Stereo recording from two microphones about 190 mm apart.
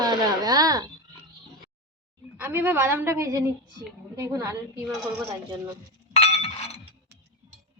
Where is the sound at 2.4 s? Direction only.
10° right (ahead or behind).